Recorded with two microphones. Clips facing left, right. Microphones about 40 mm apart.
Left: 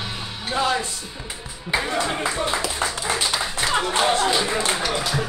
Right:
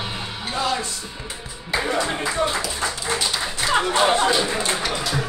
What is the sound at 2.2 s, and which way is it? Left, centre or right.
Speech, left.